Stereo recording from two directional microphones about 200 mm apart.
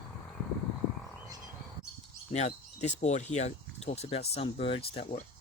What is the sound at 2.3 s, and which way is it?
Speech, 35° left (ahead or behind).